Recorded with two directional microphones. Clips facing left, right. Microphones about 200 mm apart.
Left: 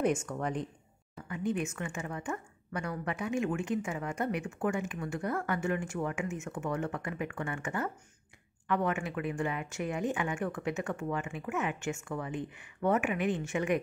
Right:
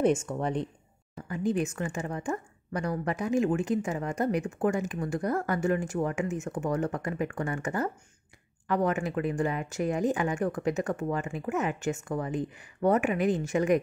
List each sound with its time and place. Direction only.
0.0 s speech: 25° right (ahead or behind)